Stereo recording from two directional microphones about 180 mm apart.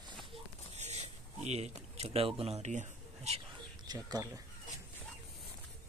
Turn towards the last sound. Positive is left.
turn(degrees=-20)  # may be behind; listen again after turning